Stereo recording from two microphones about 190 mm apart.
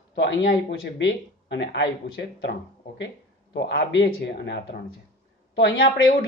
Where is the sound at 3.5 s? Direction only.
65° left (ahead or behind).